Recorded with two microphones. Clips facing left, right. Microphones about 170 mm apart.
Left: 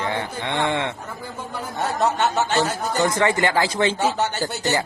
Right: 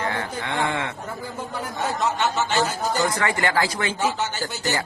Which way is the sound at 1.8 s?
40° left (ahead or behind).